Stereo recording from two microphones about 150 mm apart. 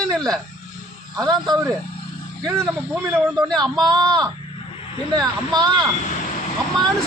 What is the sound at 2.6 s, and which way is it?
Speech, 10° right (ahead or behind).